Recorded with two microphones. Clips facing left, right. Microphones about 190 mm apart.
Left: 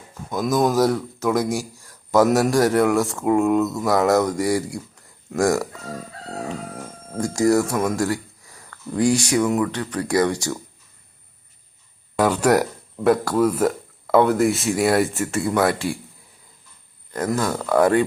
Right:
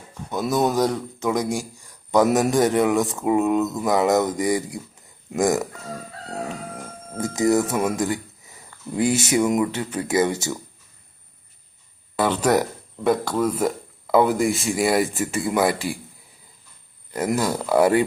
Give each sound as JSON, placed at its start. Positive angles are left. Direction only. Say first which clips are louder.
{"t": 0.1, "sound": "speech", "louder": "left 2 dB", "side_deg": 5}
{"t": 1.5, "sound": "speech", "louder": "left 1 dB", "side_deg": -15}
{"t": 2.0, "sound": "a man's voice", "louder": "left 1 dB", "side_deg": 0}
{"t": 5.3, "sound": "speech", "louder": "left 1 dB", "side_deg": -20}
{"t": 7.2, "sound": "speech", "louder": "left 2 dB", "side_deg": -5}
{"t": 8.4, "sound": "a sound", "louder": "left 1 dB", "side_deg": -20}
{"t": 9.0, "sound": "speech", "louder": "left 1 dB", "side_deg": -5}
{"t": 12.2, "sound": "speech", "louder": "left 2 dB", "side_deg": 10}
{"t": 17.1, "sound": "speech", "louder": "even", "side_deg": -10}